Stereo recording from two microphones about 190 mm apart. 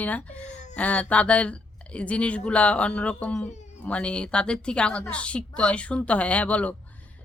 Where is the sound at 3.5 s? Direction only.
35° left (ahead or behind).